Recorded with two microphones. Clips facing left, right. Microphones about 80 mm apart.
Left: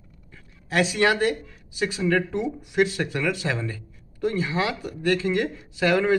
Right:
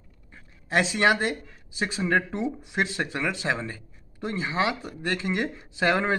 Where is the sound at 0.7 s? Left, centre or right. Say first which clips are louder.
Left 1 dB; right.